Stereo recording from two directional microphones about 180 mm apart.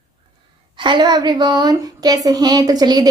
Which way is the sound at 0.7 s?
25° right (ahead or behind).